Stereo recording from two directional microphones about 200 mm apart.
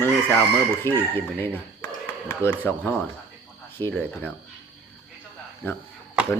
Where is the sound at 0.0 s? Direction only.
10° left (ahead or behind).